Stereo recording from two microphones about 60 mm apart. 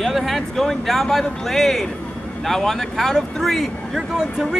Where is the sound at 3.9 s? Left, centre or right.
Centre.